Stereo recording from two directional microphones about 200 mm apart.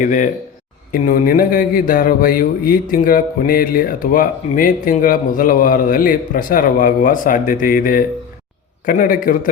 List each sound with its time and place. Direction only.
0.0 s a man's voice: 40° left (ahead or behind)